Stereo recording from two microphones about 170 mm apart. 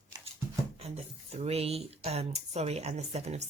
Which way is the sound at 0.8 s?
35° right (ahead or behind).